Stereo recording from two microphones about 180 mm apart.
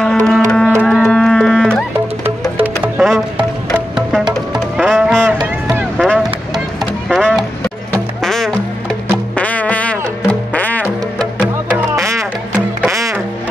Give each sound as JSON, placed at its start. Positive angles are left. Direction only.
{"t": 0.0, "sound": "music", "side_deg": 5}
{"t": 2.6, "sound": "music", "side_deg": -10}
{"t": 5.7, "sound": "a sound", "side_deg": -5}
{"t": 6.0, "sound": "vehicle", "side_deg": 0}
{"t": 7.1, "sound": "music", "side_deg": 0}
{"t": 11.7, "sound": "music", "side_deg": -15}